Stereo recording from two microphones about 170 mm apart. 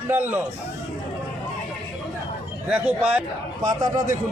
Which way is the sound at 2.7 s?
5° right (ahead or behind).